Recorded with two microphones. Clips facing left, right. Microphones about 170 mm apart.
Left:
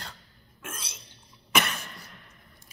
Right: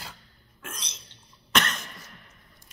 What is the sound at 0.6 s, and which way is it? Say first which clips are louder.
Throat clearing: left 1 dB; 5° left (ahead or behind).